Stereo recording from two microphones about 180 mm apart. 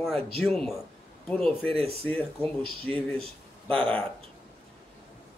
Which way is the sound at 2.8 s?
10° left (ahead or behind).